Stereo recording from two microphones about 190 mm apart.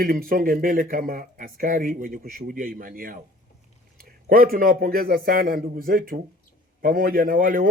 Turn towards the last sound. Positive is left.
turn(degrees=-45)  # may be behind; listen again after turning